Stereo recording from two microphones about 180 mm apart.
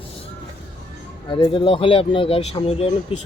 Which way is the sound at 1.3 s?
30° left (ahead or behind).